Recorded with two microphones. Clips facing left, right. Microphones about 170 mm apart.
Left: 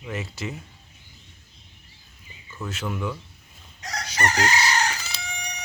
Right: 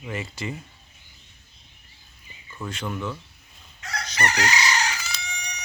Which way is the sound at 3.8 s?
35° left (ahead or behind).